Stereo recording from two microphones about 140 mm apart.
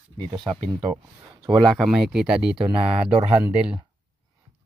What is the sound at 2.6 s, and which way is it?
Speech, 40° right (ahead or behind).